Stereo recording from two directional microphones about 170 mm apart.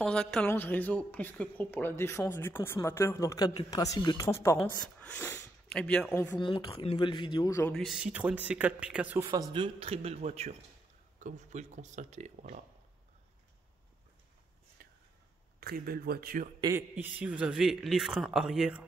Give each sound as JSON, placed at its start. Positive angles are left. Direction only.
{"t": 0.0, "sound": "speech", "side_deg": 5}
{"t": 4.6, "sound": "speech", "side_deg": 5}
{"t": 6.4, "sound": "speech", "side_deg": 30}
{"t": 7.7, "sound": "speech", "side_deg": 0}
{"t": 14.8, "sound": "a sound", "side_deg": -60}
{"t": 15.6, "sound": "speech", "side_deg": -60}
{"t": 16.9, "sound": "speech", "side_deg": -10}